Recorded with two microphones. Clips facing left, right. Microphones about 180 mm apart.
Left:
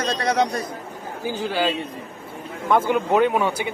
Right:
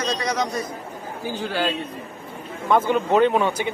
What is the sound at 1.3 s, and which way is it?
Speech, 10° left (ahead or behind).